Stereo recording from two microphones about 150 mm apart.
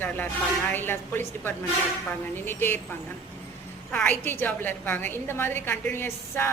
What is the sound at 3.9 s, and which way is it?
A woman's voice, 10° left (ahead or behind).